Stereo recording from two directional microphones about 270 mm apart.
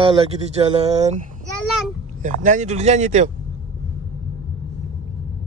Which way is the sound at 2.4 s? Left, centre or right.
Right.